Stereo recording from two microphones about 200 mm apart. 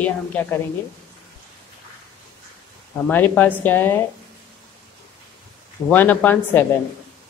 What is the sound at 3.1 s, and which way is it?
Speech, 10° left (ahead or behind).